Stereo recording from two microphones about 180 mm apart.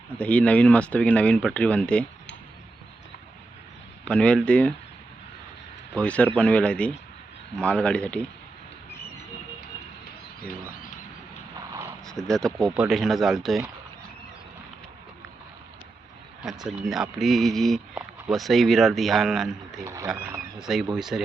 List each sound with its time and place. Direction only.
0.2 s speech: 5° left (ahead or behind)
4.0 s speech: 5° left (ahead or behind)
5.9 s speech: 5° left (ahead or behind)
12.0 s speech: 5° left (ahead or behind)
16.4 s speech: centre (ahead or behind)
19.8 s speech: 15° right (ahead or behind)
20.6 s speech: centre (ahead or behind)